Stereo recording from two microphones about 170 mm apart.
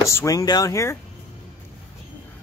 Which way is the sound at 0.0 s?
15° left (ahead or behind).